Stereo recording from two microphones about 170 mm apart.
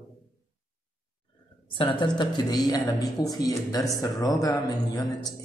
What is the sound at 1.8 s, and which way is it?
Speech, 30° left (ahead or behind).